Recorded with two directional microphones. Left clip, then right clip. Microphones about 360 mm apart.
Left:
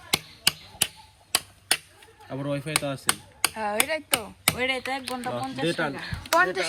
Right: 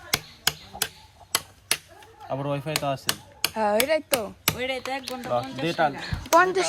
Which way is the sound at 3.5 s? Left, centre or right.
Centre.